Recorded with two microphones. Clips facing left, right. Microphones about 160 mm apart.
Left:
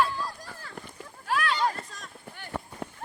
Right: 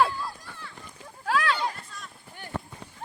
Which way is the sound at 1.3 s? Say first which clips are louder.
Right 2 dB; 90° right.